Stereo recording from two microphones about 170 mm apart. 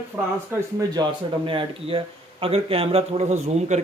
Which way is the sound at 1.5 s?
30° right (ahead or behind).